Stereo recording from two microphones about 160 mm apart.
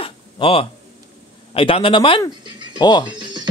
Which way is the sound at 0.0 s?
35° left (ahead or behind).